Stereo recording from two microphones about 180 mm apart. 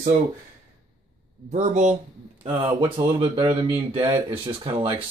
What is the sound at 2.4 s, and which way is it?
Speech, 30° right (ahead or behind).